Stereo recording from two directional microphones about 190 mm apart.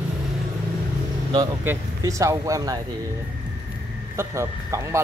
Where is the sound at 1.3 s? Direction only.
15° right (ahead or behind).